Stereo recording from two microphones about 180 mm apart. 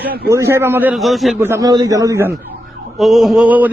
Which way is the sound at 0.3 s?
15° right (ahead or behind).